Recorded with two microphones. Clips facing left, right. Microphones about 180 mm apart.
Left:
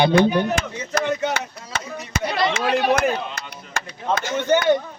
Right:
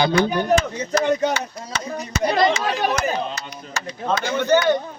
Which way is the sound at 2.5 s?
55° left (ahead or behind).